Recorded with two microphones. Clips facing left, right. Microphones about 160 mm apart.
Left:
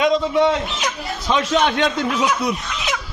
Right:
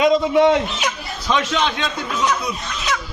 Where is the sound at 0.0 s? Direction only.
10° right (ahead or behind).